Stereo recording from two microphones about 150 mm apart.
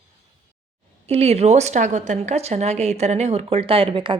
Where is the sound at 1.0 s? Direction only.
45° right (ahead or behind).